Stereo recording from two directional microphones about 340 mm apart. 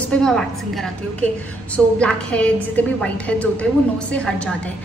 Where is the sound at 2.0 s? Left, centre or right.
Centre.